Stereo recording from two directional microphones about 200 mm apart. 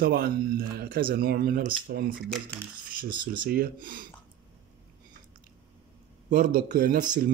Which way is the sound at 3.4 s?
45° right (ahead or behind).